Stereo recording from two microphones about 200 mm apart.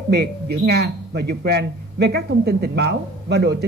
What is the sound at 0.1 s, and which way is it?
Speech, 55° right (ahead or behind).